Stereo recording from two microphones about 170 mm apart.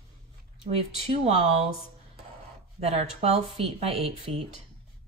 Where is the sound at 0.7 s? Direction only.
40° right (ahead or behind).